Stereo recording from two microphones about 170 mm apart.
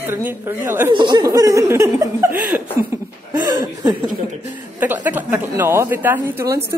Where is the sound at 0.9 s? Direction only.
25° right (ahead or behind).